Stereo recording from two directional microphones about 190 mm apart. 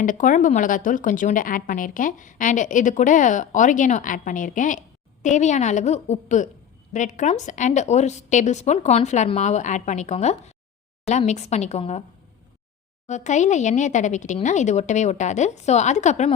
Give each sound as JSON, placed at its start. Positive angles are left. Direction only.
{"t": 0.0, "sound": "a woman's voice", "side_deg": 45}
{"t": 13.1, "sound": "a woman's voice", "side_deg": 40}